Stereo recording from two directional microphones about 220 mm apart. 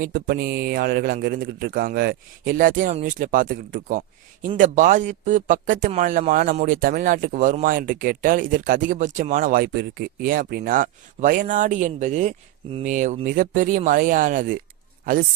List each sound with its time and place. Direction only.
0.0 s speech: 40° right (ahead or behind)